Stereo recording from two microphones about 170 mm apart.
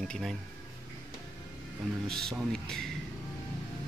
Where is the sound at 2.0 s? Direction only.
5° left (ahead or behind).